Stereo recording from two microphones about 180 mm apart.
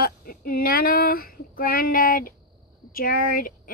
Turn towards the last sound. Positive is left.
turn(degrees=50)  # may be behind; listen again after turning